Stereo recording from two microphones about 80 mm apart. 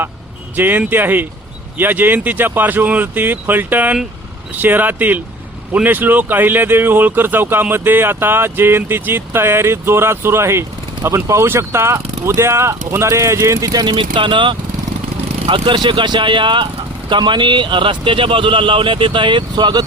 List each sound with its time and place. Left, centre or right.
0.5 s speech: right
13.8 s a man's voice: right
15.5 s a man's voice: right
17.1 s a man's voice: right